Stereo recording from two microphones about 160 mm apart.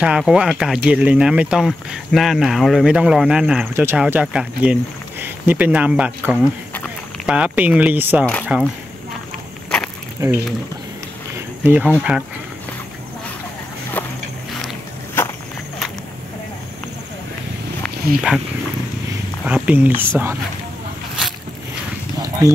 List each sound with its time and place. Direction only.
0.0 s speech: 5° right (ahead or behind)
10.2 s speech: 15° right (ahead or behind)
11.6 s speech: 10° right (ahead or behind)
14.0 s walk: 10° left (ahead or behind)
18.3 s speech: 5° right (ahead or behind)
22.4 s speech: 20° right (ahead or behind)